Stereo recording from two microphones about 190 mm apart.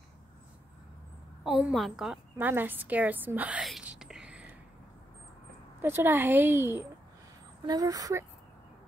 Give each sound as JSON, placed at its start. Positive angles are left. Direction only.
{"t": 1.4, "sound": "a woman's voice", "side_deg": -5}
{"t": 5.8, "sound": "a woman's voice", "side_deg": -10}